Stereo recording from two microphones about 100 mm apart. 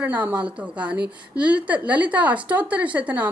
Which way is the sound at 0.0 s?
15° right (ahead or behind).